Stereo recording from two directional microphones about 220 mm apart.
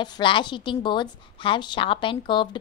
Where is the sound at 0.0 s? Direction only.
20° left (ahead or behind).